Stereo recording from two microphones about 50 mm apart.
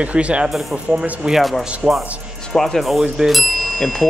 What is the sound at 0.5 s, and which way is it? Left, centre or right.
Speech, centre.